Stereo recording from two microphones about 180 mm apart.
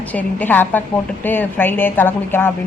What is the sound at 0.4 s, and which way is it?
A woman's voice, 10° left (ahead or behind).